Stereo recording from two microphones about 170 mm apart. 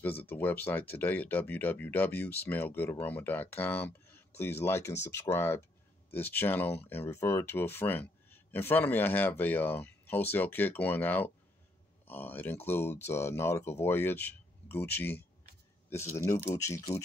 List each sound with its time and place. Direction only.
0.0 s speech: 10° left (ahead or behind)